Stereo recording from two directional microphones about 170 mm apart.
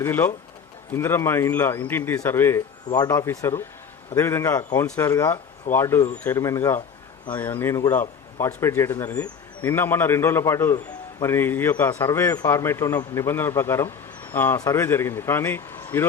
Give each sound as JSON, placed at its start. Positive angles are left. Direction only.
{"t": 0.0, "sound": "a man's voice", "side_deg": 15}